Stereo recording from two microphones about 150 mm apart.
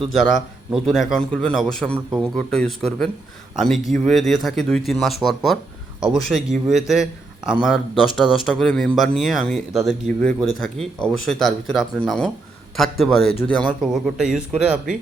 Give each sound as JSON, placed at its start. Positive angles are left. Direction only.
{"t": 0.1, "sound": "a man's voice", "side_deg": 0}